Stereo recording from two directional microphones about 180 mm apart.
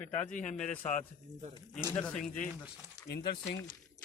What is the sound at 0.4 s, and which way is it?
Speech, 5° left (ahead or behind).